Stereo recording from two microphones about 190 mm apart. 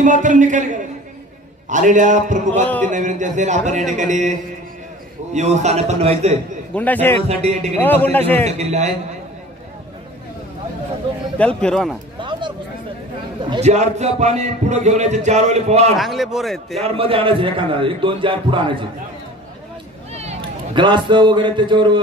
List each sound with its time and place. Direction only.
0.0 s a man's voice: 40° right (ahead or behind)
2.6 s a man's voice: 10° left (ahead or behind)
2.9 s a man's voice: 40° right (ahead or behind)
6.7 s a man's voice: 10° left (ahead or behind)
7.2 s a man's voice: 35° right (ahead or behind)
7.8 s a man's voice: 10° left (ahead or behind)
8.5 s a man's voice: 35° right (ahead or behind)
11.3 s a man's voice: 5° left (ahead or behind)
12.2 s a sound: 25° right (ahead or behind)
13.4 s a man's voice: 30° right (ahead or behind)
16.0 s a man's voice: centre (ahead or behind)
16.8 s a man's voice: 30° right (ahead or behind)
20.2 s a man's voice: 30° right (ahead or behind)